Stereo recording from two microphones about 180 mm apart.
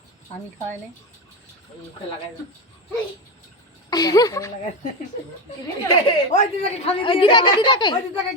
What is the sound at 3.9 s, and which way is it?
Speech, 20° left (ahead or behind).